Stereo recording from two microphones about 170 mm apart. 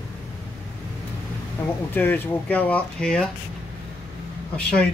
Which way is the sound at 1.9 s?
10° left (ahead or behind).